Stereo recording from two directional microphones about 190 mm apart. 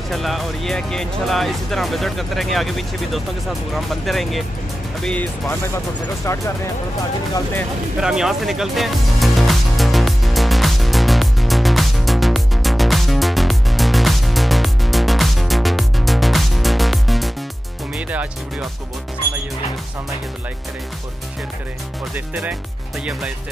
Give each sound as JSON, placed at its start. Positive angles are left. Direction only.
{"t": 0.1, "sound": "speech", "side_deg": 0}
{"t": 8.0, "sound": "music", "side_deg": -5}
{"t": 22.1, "sound": "speech", "side_deg": -10}